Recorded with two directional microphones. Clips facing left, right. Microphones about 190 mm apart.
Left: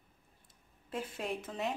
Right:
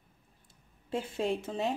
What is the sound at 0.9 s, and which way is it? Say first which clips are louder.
Speech: right 6 dB; 30° right (ahead or behind).